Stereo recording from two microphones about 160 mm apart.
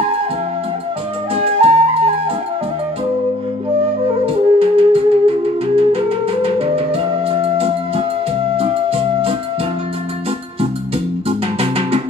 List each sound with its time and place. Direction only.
1.3 s flute: 35° right (ahead or behind)
4.6 s music: 35° right (ahead or behind)
11.2 s music: 35° right (ahead or behind)